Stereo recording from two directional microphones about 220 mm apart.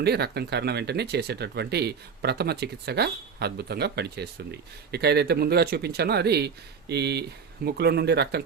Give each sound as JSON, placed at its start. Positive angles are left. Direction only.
{"t": 0.0, "sound": "speech", "side_deg": -45}